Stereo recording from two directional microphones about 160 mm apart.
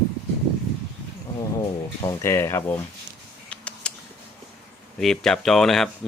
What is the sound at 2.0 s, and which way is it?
Speech, 20° left (ahead or behind).